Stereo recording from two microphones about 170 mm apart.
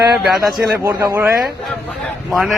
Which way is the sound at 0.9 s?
20° right (ahead or behind).